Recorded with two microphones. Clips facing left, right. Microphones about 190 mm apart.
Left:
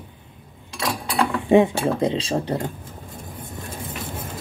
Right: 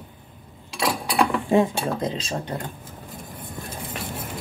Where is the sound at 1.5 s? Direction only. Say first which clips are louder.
Left 4 dB; 25° left (ahead or behind).